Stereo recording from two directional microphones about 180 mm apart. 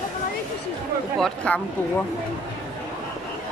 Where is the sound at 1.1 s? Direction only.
5° left (ahead or behind).